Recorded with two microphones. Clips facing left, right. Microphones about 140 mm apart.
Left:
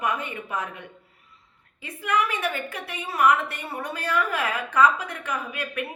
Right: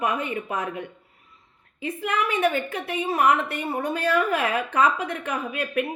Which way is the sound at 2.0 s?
50° right (ahead or behind).